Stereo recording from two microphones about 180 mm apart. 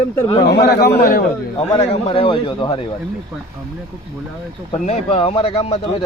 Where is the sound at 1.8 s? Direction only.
35° left (ahead or behind).